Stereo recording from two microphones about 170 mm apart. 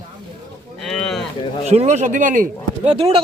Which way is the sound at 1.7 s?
40° right (ahead or behind).